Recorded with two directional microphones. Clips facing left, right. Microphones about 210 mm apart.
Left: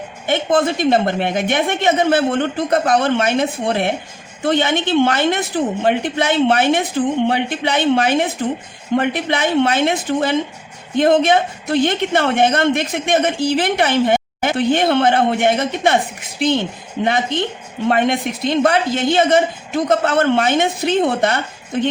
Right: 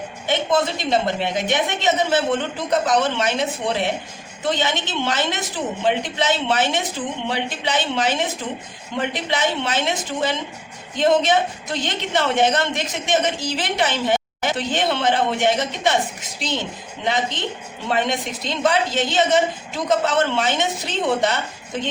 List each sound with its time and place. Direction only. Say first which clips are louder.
0.3 s a woman's voice: left 4 dB; 50° left (ahead or behind)